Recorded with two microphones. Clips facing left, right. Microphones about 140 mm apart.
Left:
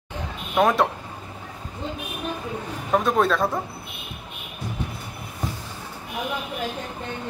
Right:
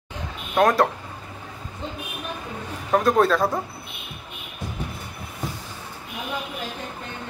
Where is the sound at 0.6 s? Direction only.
5° left (ahead or behind).